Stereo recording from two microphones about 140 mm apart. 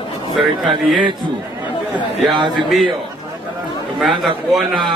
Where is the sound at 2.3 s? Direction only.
35° right (ahead or behind).